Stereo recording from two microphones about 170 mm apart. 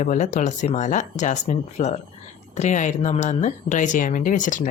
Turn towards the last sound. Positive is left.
turn(degrees=50)  # may be behind; listen again after turning